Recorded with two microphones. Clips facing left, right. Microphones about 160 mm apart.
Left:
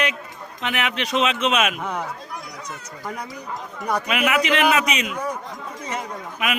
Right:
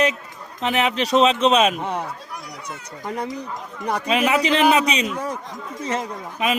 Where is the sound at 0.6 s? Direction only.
35° right (ahead or behind).